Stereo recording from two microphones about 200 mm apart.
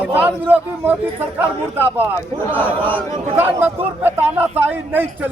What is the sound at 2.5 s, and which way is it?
Speech, 10° left (ahead or behind).